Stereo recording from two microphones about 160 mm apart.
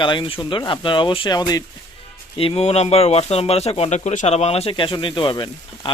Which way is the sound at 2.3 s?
35° left (ahead or behind).